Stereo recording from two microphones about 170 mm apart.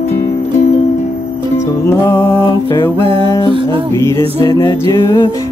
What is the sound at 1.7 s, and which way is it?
Music, 15° left (ahead or behind).